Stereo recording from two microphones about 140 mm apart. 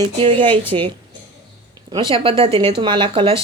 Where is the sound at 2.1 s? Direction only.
40° right (ahead or behind).